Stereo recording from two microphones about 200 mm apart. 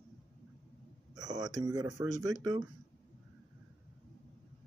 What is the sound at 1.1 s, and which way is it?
Speech, 20° right (ahead or behind).